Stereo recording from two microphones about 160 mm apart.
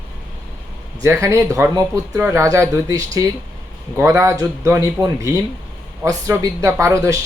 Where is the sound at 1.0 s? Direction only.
15° right (ahead or behind).